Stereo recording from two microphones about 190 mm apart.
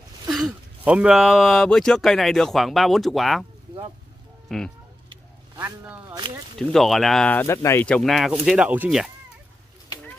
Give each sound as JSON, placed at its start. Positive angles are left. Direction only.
{"t": 0.3, "sound": "speech", "side_deg": 0}
{"t": 4.5, "sound": "speech", "side_deg": 0}
{"t": 5.1, "sound": "a sound", "side_deg": -20}
{"t": 6.7, "sound": "speech", "side_deg": 0}